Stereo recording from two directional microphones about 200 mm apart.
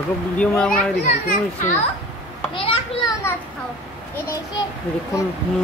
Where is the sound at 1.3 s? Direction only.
40° left (ahead or behind).